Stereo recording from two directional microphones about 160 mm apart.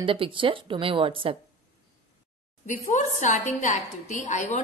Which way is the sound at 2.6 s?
50° left (ahead or behind).